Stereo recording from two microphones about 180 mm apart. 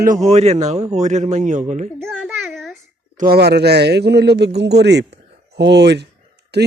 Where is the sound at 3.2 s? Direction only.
60° right (ahead or behind).